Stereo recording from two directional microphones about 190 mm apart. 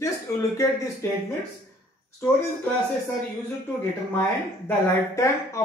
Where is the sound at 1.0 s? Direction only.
15° left (ahead or behind).